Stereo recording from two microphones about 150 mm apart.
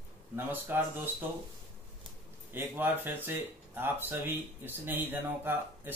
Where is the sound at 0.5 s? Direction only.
15° right (ahead or behind).